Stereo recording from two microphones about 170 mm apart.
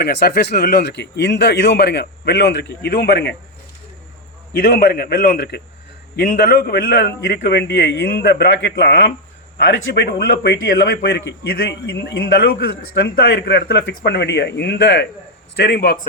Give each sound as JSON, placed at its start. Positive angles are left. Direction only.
{"t": 0.0, "sound": "a man's voice", "side_deg": 70}
{"t": 4.5, "sound": "a man's voice", "side_deg": 60}
{"t": 15.5, "sound": "a man's voice", "side_deg": 75}